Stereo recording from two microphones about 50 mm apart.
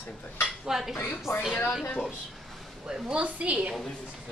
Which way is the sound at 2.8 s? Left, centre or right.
Centre.